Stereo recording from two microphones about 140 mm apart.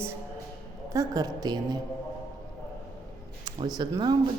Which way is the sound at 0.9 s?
25° right (ahead or behind).